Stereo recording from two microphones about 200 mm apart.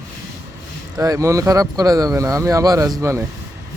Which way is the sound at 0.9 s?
15° right (ahead or behind).